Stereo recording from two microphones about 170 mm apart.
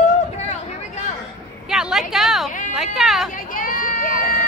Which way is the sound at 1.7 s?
Centre (ahead or behind).